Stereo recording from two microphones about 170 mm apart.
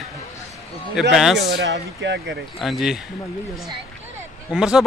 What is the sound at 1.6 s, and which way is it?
Speech, 90° right.